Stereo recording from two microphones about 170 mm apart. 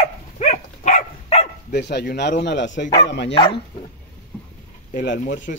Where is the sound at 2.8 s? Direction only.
20° left (ahead or behind).